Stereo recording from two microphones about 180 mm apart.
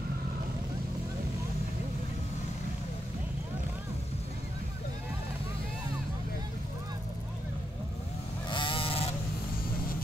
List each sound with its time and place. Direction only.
8.5 s vehicle: 25° left (ahead or behind)